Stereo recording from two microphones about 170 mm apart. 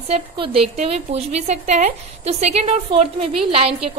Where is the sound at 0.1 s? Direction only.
35° right (ahead or behind).